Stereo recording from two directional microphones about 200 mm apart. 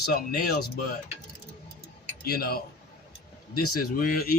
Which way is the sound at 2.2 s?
50° left (ahead or behind).